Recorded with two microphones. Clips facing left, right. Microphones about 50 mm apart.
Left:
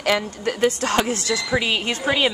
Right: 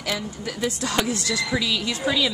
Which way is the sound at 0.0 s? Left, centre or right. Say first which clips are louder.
Left 7 dB; left.